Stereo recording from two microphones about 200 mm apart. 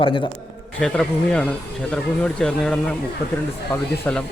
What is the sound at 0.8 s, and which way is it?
Speech, 5° left (ahead or behind).